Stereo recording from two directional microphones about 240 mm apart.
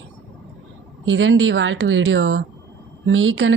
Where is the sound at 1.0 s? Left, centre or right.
Right.